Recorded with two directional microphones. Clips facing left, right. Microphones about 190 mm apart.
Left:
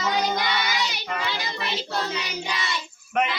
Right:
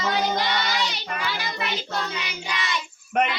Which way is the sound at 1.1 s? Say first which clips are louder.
Left 1 dB; 25° left (ahead or behind).